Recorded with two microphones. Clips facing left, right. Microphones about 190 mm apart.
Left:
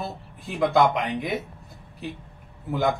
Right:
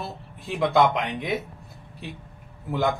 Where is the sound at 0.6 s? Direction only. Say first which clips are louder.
Even; centre (ahead or behind).